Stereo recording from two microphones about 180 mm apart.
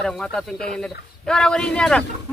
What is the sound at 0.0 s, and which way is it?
A man's voice, centre (ahead or behind).